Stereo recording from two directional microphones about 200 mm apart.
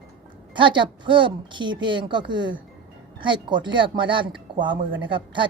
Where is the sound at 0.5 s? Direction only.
25° right (ahead or behind).